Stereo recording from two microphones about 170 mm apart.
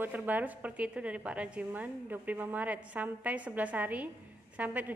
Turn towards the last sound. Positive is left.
turn(degrees=-10)  # may be behind; listen again after turning